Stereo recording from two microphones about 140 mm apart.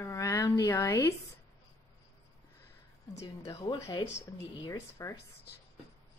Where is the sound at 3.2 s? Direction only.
25° left (ahead or behind).